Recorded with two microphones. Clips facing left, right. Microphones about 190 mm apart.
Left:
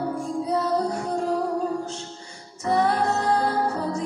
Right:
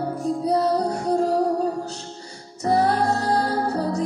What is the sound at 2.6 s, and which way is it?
Music, 35° right (ahead or behind).